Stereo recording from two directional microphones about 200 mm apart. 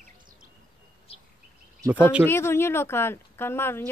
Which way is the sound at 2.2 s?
10° left (ahead or behind).